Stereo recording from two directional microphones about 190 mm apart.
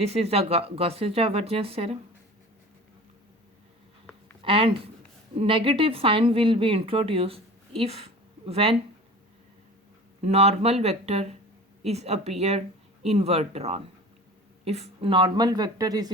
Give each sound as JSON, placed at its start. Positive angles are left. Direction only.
{"t": 0.0, "sound": "speech", "side_deg": -35}
{"t": 4.4, "sound": "a woman's voice", "side_deg": -30}
{"t": 10.2, "sound": "a woman's voice", "side_deg": -35}